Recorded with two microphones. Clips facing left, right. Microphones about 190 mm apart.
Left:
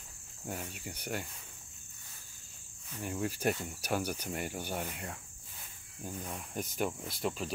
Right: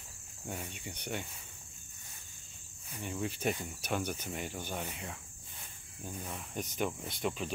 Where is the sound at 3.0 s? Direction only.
5° left (ahead or behind).